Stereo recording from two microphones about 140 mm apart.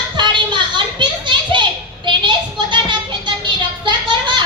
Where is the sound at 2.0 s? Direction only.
35° right (ahead or behind).